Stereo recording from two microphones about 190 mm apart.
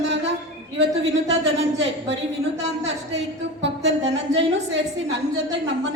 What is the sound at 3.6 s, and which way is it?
Speech, 70° right (ahead or behind).